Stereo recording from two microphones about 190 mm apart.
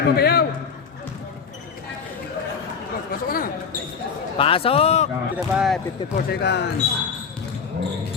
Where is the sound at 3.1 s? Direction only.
50° left (ahead or behind).